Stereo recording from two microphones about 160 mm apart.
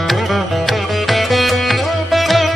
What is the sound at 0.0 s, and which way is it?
Music, centre (ahead or behind).